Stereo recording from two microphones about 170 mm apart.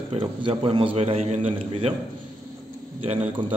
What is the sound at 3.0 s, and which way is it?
Speech, 35° right (ahead or behind).